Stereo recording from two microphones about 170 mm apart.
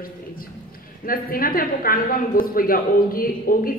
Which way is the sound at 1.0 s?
55° left (ahead or behind).